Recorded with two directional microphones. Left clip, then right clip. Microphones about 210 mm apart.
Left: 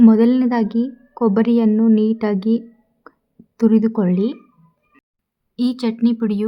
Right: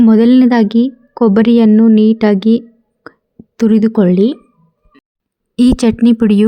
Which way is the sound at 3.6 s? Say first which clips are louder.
Right 5 dB; 30° right (ahead or behind).